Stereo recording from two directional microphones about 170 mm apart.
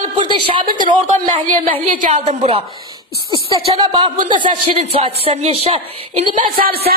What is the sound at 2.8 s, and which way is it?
Speech, 25° right (ahead or behind).